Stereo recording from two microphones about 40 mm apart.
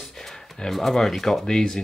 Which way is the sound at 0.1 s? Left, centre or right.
Centre.